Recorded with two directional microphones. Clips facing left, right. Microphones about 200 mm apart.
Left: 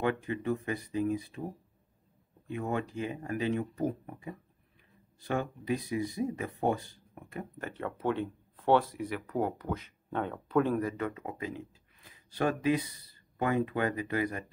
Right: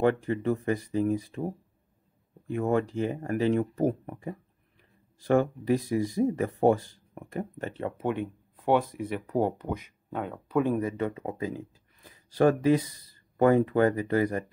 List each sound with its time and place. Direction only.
0.0 s speech: 40° right (ahead or behind)
2.5 s speech: 45° right (ahead or behind)
7.6 s speech: 25° right (ahead or behind)
9.7 s speech: 15° right (ahead or behind); by 14.4 s 40° right (ahead or behind)